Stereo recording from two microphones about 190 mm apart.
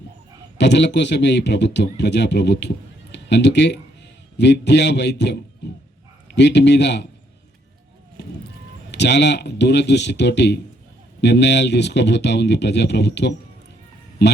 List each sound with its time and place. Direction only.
0.6 s speech: 65° left (ahead or behind)
8.9 s speech: 65° left (ahead or behind)